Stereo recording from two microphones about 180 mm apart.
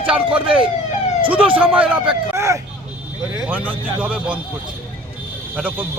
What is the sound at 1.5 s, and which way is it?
Speech, 10° right (ahead or behind).